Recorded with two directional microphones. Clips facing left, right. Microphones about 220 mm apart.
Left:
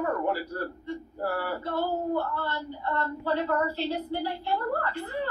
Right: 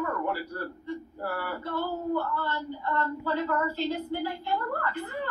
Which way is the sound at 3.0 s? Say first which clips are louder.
Left 1 dB; 35° left (ahead or behind).